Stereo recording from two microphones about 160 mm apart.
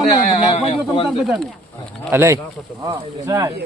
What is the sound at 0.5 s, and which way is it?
Speech, 40° left (ahead or behind).